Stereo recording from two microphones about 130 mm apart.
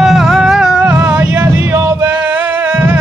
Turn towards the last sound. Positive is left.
turn(degrees=-15)  # may be behind; listen again after turning